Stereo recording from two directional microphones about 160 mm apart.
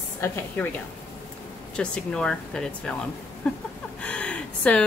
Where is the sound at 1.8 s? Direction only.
5° left (ahead or behind).